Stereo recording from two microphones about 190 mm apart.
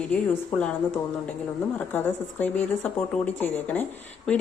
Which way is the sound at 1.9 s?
10° left (ahead or behind).